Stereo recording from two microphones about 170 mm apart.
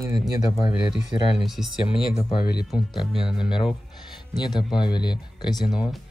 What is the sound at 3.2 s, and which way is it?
Speech, 5° right (ahead or behind).